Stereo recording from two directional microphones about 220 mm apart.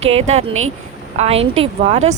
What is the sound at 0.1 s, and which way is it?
A woman's voice, 30° right (ahead or behind).